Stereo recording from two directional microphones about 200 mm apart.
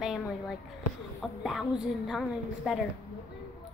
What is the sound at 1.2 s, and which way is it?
A woman's voice, centre (ahead or behind).